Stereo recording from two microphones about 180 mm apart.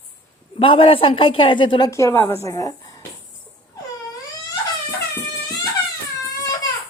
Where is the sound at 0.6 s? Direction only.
30° left (ahead or behind); by 2.4 s 10° left (ahead or behind).